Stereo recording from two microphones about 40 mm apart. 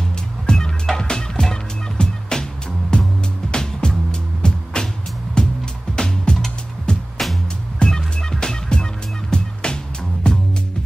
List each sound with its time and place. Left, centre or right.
0.5 s music: centre
6.3 s music: centre